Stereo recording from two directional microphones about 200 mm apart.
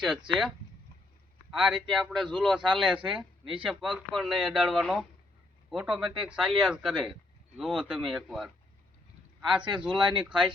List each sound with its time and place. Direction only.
0.0 s a man's voice: 5° right (ahead or behind)
1.5 s a man's voice: centre (ahead or behind)
9.6 s speech: 25° right (ahead or behind)
9.9 s a man's voice: 5° right (ahead or behind)